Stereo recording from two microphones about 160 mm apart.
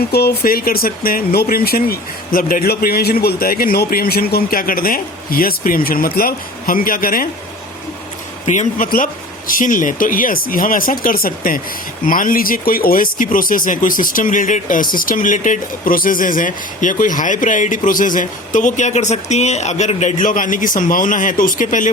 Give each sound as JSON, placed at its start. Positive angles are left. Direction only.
{"t": 0.1, "sound": "speech", "side_deg": 75}
{"t": 8.4, "sound": "speech", "side_deg": 55}